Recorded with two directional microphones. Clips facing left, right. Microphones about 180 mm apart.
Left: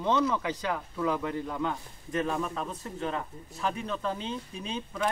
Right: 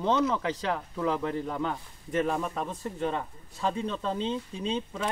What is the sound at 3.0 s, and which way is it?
Speech, 25° right (ahead or behind).